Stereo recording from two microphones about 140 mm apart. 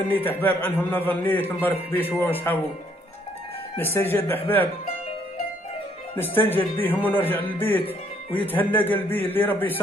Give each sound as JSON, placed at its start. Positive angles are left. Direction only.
{"t": 0.1, "sound": "a man's voice", "side_deg": 15}
{"t": 3.7, "sound": "a man's voice", "side_deg": 15}
{"t": 6.1, "sound": "a man's voice", "side_deg": 15}
{"t": 7.8, "sound": "speech", "side_deg": 40}
{"t": 8.5, "sound": "a man's voice", "side_deg": 15}